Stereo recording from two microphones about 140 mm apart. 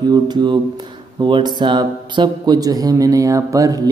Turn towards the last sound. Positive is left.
turn(degrees=-25)  # may be behind; listen again after turning